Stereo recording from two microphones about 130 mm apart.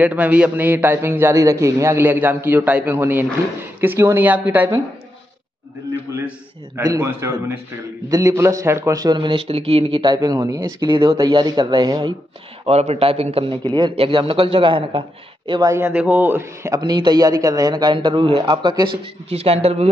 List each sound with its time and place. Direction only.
0.0 s a man's voice: 10° right (ahead or behind)
6.8 s a man's voice: 25° right (ahead or behind); by 10.0 s 50° right (ahead or behind)
10.0 s a man's voice: 30° right (ahead or behind)
11.1 s a man's voice: 30° right (ahead or behind)
12.6 s a man's voice: 55° right (ahead or behind)
13.7 s a man's voice: 35° right (ahead or behind)
13.9 s a man's voice: 45° right (ahead or behind)
15.7 s a man's voice: 20° right (ahead or behind); by 19.9 s 50° right (ahead or behind)